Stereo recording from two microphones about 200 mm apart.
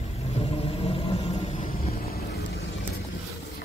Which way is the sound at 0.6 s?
30° left (ahead or behind).